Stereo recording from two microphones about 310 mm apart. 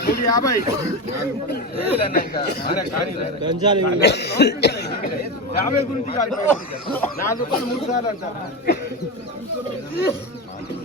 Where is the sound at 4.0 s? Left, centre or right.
Left.